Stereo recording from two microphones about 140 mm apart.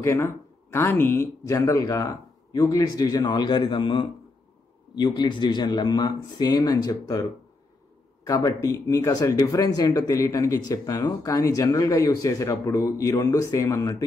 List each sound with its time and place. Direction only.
0.0 s speech: 20° left (ahead or behind)
8.3 s speech: 25° left (ahead or behind)